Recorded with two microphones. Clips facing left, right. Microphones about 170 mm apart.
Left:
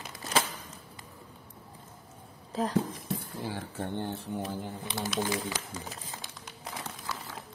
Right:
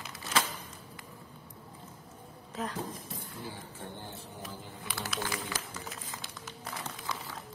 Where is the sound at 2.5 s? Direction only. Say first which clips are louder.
Left 6 dB; 35° left (ahead or behind).